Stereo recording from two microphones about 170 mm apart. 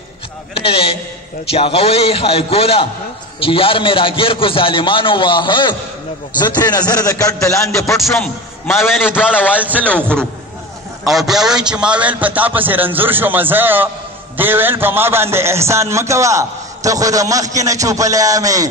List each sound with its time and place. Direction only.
0.6 s a man's voice: 30° left (ahead or behind)
8.0 s a man's voice: centre (ahead or behind)
9.6 s a man's voice: 10° right (ahead or behind)
11.1 s a man's voice: centre (ahead or behind); by 18.7 s 20° right (ahead or behind)